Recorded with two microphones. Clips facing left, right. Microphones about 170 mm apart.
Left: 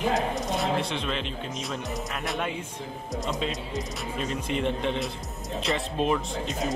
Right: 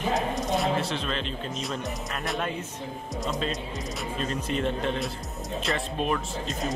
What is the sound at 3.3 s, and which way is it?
Speech, 20° left (ahead or behind).